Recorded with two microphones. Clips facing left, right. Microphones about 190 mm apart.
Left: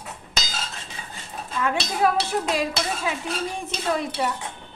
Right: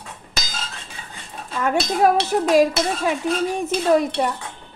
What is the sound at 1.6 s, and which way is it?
Speech, 45° right (ahead or behind).